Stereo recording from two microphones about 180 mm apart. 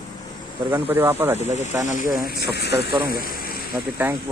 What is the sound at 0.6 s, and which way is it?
Speech, 10° right (ahead or behind).